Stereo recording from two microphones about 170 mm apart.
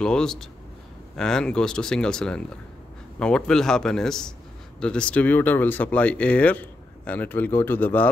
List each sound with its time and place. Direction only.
0.0 s speech: 5° left (ahead or behind)